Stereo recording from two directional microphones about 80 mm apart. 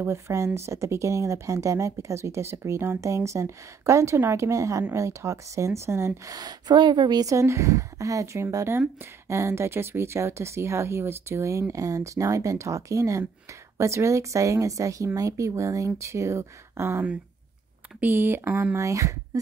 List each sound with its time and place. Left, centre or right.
0.0 s speech: right
6.3 s a woman's voice: right
7.2 s speech: right
18.0 s speech: right
18.8 s speech: right